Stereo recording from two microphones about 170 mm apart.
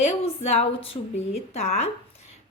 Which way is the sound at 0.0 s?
40° left (ahead or behind).